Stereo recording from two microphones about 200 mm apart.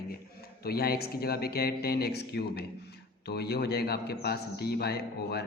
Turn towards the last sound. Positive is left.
turn(degrees=55)  # may be behind; listen again after turning